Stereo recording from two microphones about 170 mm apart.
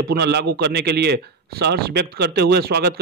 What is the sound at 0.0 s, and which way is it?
A man's voice, 70° right (ahead or behind).